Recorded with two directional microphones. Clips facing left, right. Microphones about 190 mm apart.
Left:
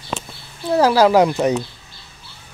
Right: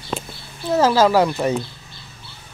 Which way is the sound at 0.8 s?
15° left (ahead or behind).